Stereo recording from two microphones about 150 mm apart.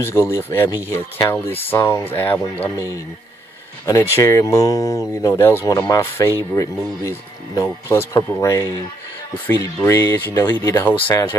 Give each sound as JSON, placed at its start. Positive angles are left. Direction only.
{"t": 0.0, "sound": "speech", "side_deg": 20}